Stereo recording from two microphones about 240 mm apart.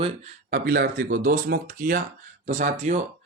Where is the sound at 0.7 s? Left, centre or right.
Right.